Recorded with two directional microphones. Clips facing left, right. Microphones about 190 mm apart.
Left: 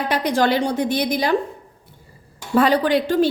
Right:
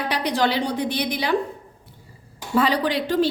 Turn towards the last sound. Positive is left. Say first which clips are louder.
# left 3 dB
turn(degrees=50)  # may be behind; listen again after turning